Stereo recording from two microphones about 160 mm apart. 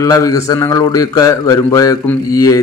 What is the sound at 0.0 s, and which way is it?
A man's voice, 20° left (ahead or behind).